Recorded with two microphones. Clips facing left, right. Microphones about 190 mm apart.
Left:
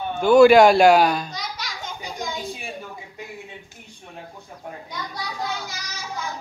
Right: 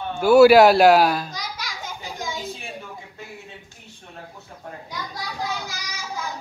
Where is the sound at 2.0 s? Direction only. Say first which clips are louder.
Left 1 dB; centre (ahead or behind).